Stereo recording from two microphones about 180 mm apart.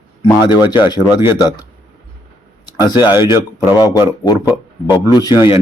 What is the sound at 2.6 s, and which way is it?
A man's voice, 20° left (ahead or behind).